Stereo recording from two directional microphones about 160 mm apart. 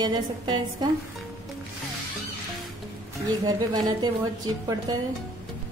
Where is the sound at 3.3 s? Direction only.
25° right (ahead or behind).